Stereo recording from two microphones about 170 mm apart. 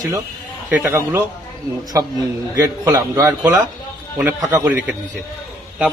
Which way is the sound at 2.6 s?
20° right (ahead or behind).